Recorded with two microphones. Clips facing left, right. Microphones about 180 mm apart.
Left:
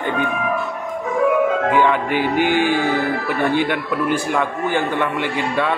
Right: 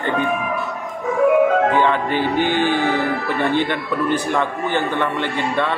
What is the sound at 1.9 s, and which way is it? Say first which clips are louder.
Speech: even; 10° left (ahead or behind).